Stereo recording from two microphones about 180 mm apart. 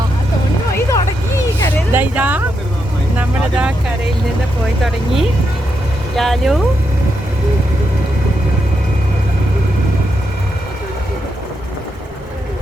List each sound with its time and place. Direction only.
0.9 s vehicle: 15° left (ahead or behind)
1.9 s speech: 10° right (ahead or behind)
3.2 s vehicle: 5° right (ahead or behind)
6.1 s speech: centre (ahead or behind)